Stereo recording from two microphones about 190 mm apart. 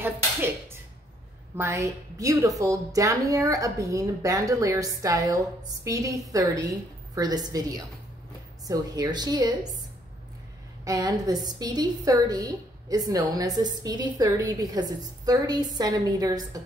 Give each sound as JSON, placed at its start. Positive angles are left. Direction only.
{"t": 1.6, "sound": "a woman's voice", "side_deg": -15}
{"t": 10.9, "sound": "a woman's voice", "side_deg": -20}